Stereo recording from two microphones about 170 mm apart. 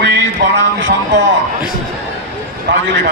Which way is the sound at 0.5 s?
90° right.